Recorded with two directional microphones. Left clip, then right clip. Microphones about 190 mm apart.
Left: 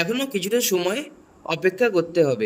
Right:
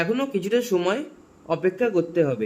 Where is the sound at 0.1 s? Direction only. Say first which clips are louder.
Even; 50° left (ahead or behind).